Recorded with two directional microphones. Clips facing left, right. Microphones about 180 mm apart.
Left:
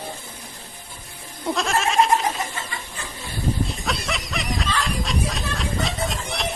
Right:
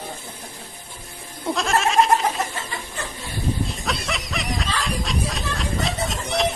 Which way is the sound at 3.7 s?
Centre (ahead or behind).